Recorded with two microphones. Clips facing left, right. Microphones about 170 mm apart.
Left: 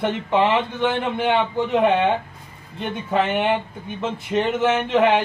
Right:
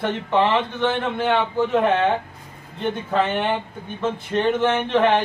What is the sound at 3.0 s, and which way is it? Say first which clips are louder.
Speech: left 2 dB; 10° left (ahead or behind).